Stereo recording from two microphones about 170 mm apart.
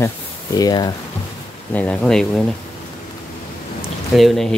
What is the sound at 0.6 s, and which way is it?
Speech, 25° left (ahead or behind).